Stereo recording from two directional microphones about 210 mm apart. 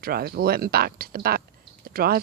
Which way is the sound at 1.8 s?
45° right (ahead or behind).